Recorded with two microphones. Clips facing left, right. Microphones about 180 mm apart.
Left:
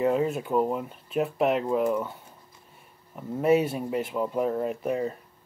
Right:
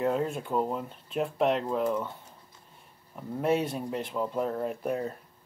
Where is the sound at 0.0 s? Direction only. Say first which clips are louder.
Left 4 dB; 5° left (ahead or behind).